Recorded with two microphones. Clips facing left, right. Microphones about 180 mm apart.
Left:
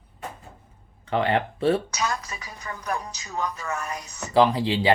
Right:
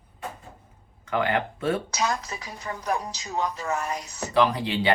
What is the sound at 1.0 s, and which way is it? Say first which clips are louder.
Speech: left 2 dB; 30° left (ahead or behind).